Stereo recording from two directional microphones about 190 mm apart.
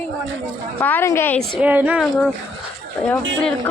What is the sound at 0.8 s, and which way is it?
Speech, 10° left (ahead or behind).